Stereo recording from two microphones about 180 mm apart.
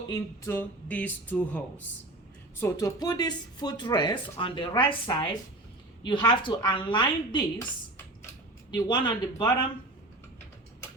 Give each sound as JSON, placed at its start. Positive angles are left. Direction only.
{"t": 0.1, "sound": "speech", "side_deg": 15}
{"t": 8.7, "sound": "speech", "side_deg": 25}